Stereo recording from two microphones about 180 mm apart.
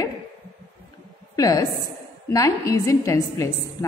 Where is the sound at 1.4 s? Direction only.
20° left (ahead or behind).